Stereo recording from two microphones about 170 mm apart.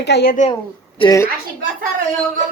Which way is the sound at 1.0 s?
20° left (ahead or behind).